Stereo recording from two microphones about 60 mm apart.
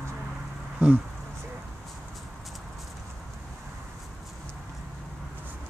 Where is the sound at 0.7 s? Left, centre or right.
Centre.